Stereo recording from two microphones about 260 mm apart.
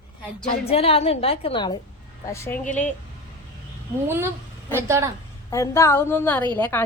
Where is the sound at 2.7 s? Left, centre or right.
Left.